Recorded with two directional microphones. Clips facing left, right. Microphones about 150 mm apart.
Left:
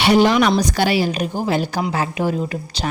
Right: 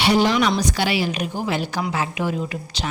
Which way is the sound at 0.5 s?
40° left (ahead or behind).